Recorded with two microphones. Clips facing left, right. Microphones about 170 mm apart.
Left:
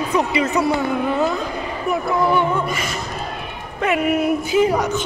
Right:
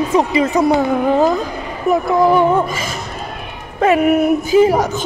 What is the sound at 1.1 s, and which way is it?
A woman's voice, 35° right (ahead or behind).